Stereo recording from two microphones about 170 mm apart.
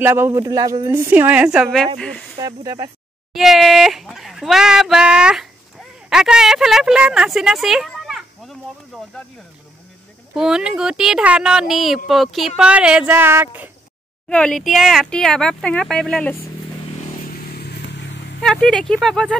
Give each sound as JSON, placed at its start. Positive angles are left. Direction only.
{"t": 0.0, "sound": "a woman's voice", "side_deg": -15}
{"t": 2.3, "sound": "speech", "side_deg": -20}
{"t": 3.3, "sound": "speech", "side_deg": 0}
{"t": 10.3, "sound": "speech", "side_deg": -5}
{"t": 14.3, "sound": "speech", "side_deg": 5}
{"t": 17.5, "sound": "vehicle", "side_deg": 65}
{"t": 18.4, "sound": "speech", "side_deg": 5}